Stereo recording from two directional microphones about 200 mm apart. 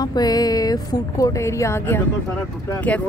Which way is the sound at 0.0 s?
20° left (ahead or behind).